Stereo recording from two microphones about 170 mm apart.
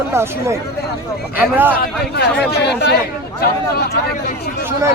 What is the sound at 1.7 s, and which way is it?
A man's voice, 60° left (ahead or behind).